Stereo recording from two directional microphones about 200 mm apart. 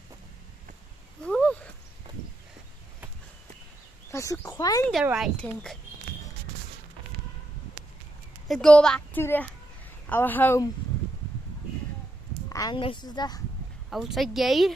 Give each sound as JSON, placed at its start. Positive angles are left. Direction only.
{"t": 1.2, "sound": "a sound", "side_deg": 5}
{"t": 4.1, "sound": "speech", "side_deg": 15}
{"t": 4.9, "sound": "a child's voice", "side_deg": -5}
{"t": 8.5, "sound": "a child's voice", "side_deg": 5}
{"t": 12.4, "sound": "speech", "side_deg": 20}
{"t": 13.8, "sound": "a child's voice", "side_deg": 0}